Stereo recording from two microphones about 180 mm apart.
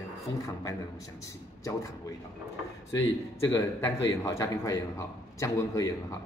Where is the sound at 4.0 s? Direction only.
15° left (ahead or behind).